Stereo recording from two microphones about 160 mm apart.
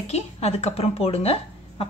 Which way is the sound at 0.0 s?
40° left (ahead or behind).